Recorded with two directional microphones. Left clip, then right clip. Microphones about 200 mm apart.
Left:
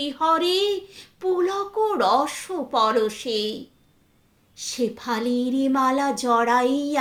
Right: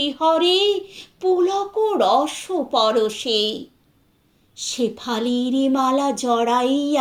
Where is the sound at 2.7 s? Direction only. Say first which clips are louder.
Right 2 dB; 45° left (ahead or behind).